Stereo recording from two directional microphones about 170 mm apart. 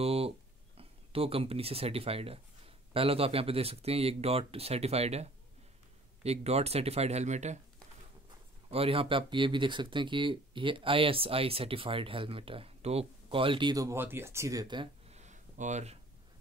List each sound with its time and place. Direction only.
0.0 s speech: 35° right (ahead or behind)
8.6 s speech: 35° right (ahead or behind)
15.1 s a sound: 45° right (ahead or behind)